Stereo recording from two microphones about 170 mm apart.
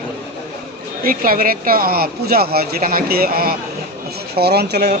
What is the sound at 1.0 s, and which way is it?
Speech, 55° right (ahead or behind).